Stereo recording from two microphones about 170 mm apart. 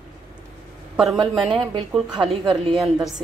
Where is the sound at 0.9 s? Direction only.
Centre (ahead or behind).